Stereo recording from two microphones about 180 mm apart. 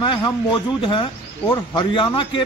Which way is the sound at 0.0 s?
25° left (ahead or behind).